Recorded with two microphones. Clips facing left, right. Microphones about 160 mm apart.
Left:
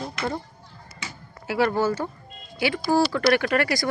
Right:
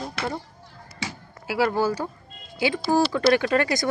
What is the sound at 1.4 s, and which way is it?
Speech, 10° right (ahead or behind).